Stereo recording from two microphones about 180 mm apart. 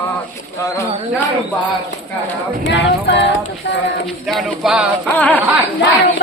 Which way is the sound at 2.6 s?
75° left (ahead or behind).